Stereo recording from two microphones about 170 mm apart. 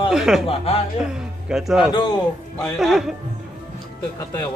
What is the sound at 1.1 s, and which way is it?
Speech, 5° right (ahead or behind).